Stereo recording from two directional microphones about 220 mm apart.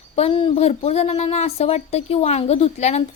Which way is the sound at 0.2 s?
25° left (ahead or behind).